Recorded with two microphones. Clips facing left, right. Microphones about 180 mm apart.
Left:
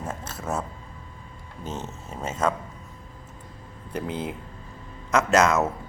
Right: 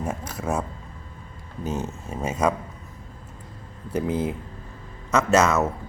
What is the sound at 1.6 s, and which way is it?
Speech, 10° right (ahead or behind).